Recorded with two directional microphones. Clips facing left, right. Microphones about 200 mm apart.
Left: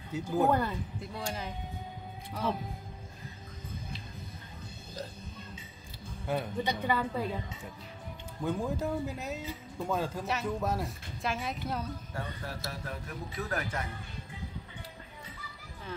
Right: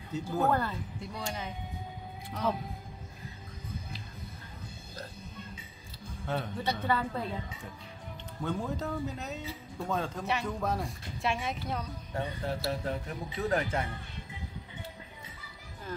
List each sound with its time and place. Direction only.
0.1 s a woman's voice: 15° left (ahead or behind)
1.1 s speech: centre (ahead or behind)
6.2 s a woman's voice: 15° left (ahead or behind)
8.4 s speech: 10° left (ahead or behind)
12.1 s speech: 25° right (ahead or behind)